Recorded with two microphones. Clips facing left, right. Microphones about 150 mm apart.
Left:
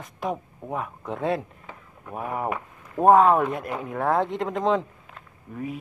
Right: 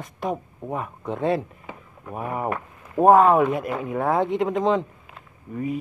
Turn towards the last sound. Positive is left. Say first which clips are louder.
# right 5 dB
turn(degrees=0)  # may be behind; listen again after turning